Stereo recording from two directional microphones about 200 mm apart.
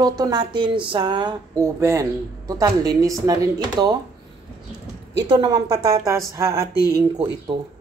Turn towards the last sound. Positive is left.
turn(degrees=-20)  # may be behind; listen again after turning